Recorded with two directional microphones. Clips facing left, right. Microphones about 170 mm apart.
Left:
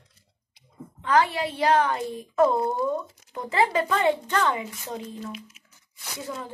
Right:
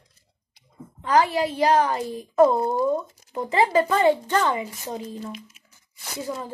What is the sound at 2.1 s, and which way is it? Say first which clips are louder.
Speech: right 4 dB; 35° right (ahead or behind).